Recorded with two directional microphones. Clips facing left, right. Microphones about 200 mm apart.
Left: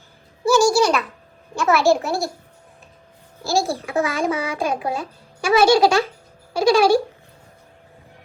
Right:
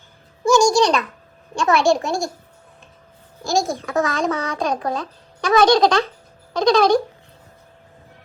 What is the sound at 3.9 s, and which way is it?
A child's voice, 15° left (ahead or behind).